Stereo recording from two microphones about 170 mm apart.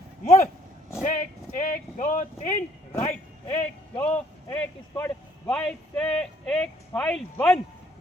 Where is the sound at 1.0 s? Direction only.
50° left (ahead or behind).